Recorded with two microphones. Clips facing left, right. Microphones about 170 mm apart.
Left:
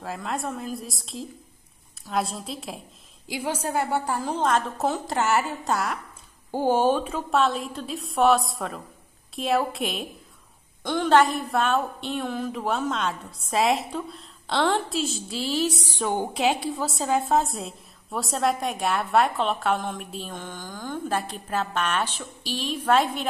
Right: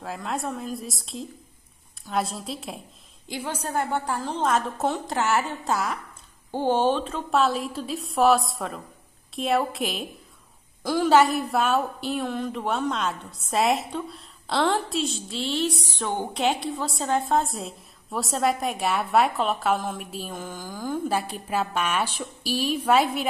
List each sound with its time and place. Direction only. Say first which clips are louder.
0.0 s a woman's voice: even; centre (ahead or behind)